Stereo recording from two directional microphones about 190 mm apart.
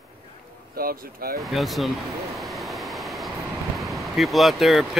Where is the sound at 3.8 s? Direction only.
Centre (ahead or behind).